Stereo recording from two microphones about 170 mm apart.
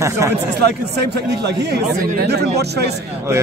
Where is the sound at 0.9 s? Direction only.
75° right (ahead or behind).